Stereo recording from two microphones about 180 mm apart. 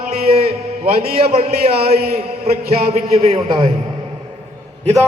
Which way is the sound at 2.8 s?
35° right (ahead or behind).